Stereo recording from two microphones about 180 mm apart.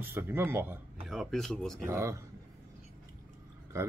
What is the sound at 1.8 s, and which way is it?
Speech, 15° right (ahead or behind).